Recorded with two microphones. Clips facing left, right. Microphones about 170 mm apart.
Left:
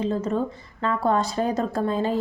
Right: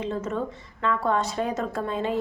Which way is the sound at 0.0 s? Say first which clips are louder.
Left 4 dB; 35° left (ahead or behind).